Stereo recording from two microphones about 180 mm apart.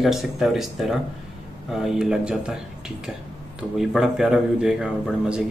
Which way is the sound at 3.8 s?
Centre (ahead or behind).